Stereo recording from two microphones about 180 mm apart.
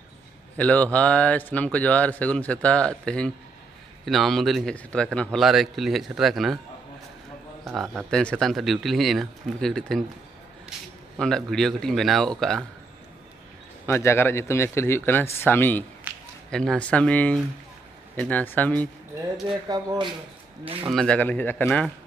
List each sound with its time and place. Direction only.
0.6 s speech: 5° left (ahead or behind)
7.9 s speech: 5° left (ahead or behind)
13.8 s speech: 15° left (ahead or behind)
16.1 s a sound: 10° right (ahead or behind)
16.4 s speech: 5° left (ahead or behind)
19.7 s speech: 25° right (ahead or behind)
20.9 s speech: 5° left (ahead or behind)